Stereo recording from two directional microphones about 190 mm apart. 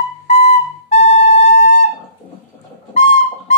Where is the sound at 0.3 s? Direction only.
35° left (ahead or behind).